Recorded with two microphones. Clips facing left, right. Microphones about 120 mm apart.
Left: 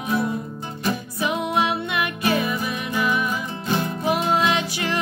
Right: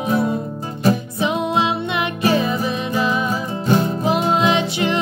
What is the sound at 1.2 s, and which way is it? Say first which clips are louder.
Music: right 2 dB; 20° right (ahead or behind).